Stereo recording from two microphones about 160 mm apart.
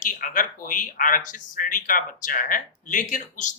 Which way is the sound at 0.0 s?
55° left (ahead or behind).